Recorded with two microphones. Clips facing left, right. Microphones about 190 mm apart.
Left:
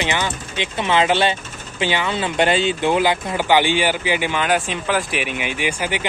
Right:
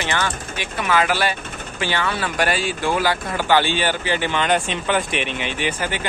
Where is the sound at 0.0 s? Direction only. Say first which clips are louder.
Left 1 dB; 15° left (ahead or behind).